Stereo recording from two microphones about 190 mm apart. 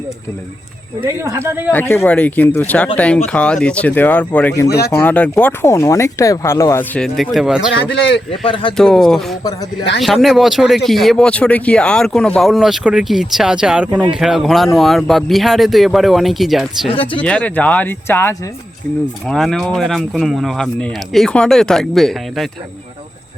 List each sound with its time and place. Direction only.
1.0 s speech: 15° right (ahead or behind)
1.7 s speech: 10° left (ahead or behind)
7.7 s speech: 70° left (ahead or behind)
8.4 s speech: 25° left (ahead or behind)
8.7 s speech: centre (ahead or behind)
9.4 s speech: 20° left (ahead or behind)
10.0 s speech: centre (ahead or behind)
16.9 s speech: 25° left (ahead or behind)
17.2 s speech: 5° left (ahead or behind)